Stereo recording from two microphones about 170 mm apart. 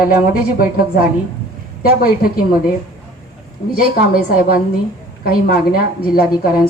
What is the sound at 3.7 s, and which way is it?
A woman's voice, 60° left (ahead or behind).